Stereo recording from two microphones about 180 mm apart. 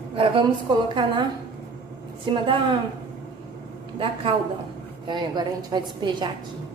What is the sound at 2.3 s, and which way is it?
Speech, 25° right (ahead or behind).